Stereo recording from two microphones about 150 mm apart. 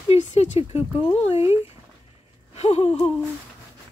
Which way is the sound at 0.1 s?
50° left (ahead or behind).